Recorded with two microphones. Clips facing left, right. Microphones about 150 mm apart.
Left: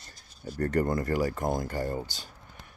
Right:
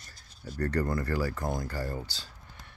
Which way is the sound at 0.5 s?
20° left (ahead or behind).